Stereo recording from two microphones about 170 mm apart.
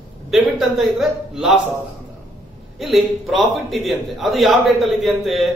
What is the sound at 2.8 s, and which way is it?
A man's voice, centre (ahead or behind).